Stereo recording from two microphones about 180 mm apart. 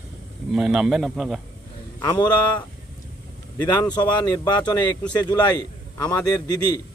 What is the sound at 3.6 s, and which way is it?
A man's voice, 25° left (ahead or behind).